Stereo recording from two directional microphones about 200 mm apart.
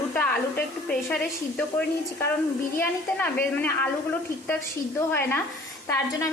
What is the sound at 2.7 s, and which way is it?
A woman's voice, 10° left (ahead or behind).